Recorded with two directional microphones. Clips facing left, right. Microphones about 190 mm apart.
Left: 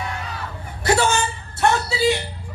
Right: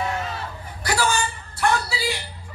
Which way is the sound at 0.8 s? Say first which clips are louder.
Left 4 dB; 25° left (ahead or behind).